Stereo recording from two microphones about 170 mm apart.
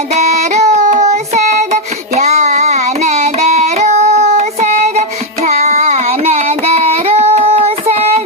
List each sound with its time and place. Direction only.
0.1 s child singing: 45° right (ahead or behind)
2.1 s carnatic music: 40° right (ahead or behind)